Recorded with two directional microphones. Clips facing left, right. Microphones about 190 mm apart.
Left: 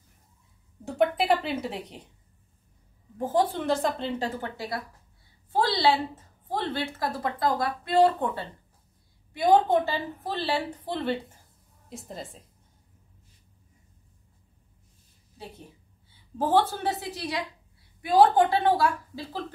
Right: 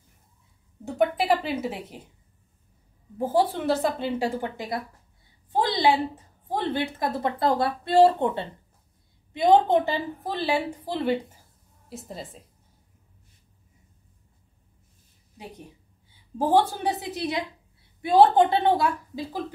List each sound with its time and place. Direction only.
0.8 s speech: centre (ahead or behind)
3.2 s a woman's voice: 10° right (ahead or behind)
16.3 s a woman's voice: 10° right (ahead or behind)